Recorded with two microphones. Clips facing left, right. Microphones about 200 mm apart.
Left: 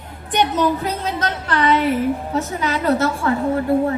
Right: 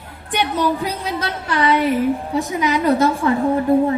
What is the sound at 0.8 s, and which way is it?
A woman's voice, 10° right (ahead or behind).